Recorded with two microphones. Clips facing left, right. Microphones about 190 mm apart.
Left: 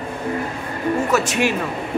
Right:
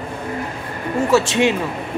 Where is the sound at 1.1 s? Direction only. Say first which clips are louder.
Right 7 dB; 25° right (ahead or behind).